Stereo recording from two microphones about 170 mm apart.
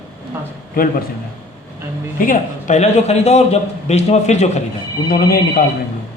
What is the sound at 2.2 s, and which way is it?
A man's voice, 50° left (ahead or behind).